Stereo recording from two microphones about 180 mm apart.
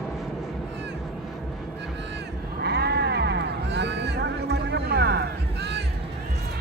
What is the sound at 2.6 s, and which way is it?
Sheep, 65° right (ahead or behind).